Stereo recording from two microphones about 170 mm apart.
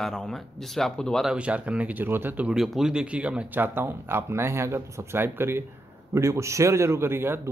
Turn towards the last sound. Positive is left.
turn(degrees=-15)  # may be behind; listen again after turning